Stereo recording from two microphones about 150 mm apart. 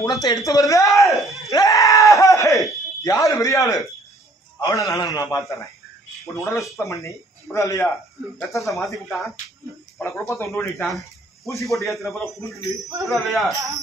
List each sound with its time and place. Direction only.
0.0 s a man's voice: 25° left (ahead or behind)
1.1 s speech: centre (ahead or behind)
1.5 s screaming: 25° left (ahead or behind)
3.0 s a man's voice: 25° left (ahead or behind)
6.4 s speech: centre (ahead or behind)
6.8 s a man's voice: 20° left (ahead or behind)
8.5 s speech: centre (ahead or behind)
10.0 s speech: 15° left (ahead or behind)
10.5 s speech: 5° left (ahead or behind)
13.0 s speech: centre (ahead or behind)